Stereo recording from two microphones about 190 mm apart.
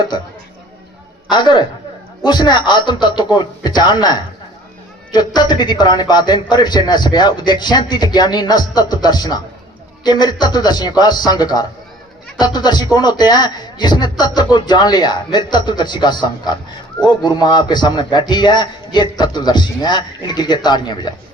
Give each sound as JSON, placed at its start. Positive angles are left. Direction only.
{"t": 1.3, "sound": "a man's voice", "side_deg": 25}